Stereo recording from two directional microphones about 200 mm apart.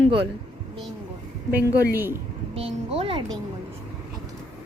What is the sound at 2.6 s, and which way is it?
Speech, 30° right (ahead or behind).